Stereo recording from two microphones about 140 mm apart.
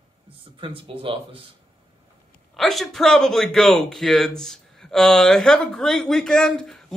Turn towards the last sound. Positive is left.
turn(degrees=5)  # may be behind; listen again after turning